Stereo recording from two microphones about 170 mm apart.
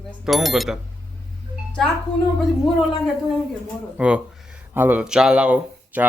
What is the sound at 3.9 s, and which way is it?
Speech, 5° right (ahead or behind).